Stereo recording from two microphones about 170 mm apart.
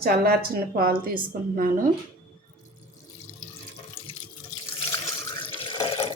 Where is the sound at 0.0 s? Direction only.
60° right (ahead or behind).